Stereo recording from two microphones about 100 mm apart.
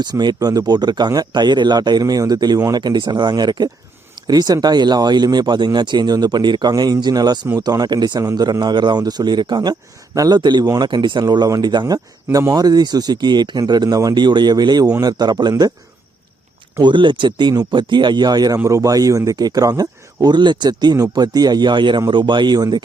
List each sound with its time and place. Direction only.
0.0 s speech: 45° right (ahead or behind)
16.8 s speech: 55° right (ahead or behind)